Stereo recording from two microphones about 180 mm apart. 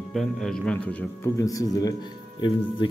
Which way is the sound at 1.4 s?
20° left (ahead or behind).